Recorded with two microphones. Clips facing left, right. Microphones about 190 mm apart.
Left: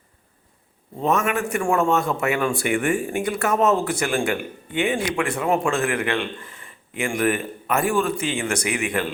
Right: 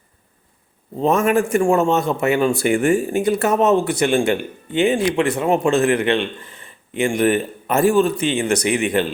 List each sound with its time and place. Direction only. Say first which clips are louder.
0.9 s speech: right 6 dB; 30° right (ahead or behind)